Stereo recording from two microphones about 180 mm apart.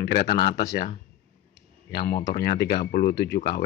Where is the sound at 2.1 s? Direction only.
60° left (ahead or behind).